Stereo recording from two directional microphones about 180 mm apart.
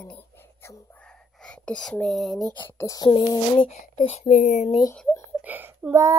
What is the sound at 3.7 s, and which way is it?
Speech, 40° left (ahead or behind).